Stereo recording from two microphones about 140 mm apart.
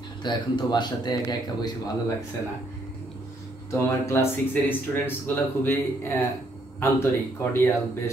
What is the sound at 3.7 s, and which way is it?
Speech, 20° left (ahead or behind).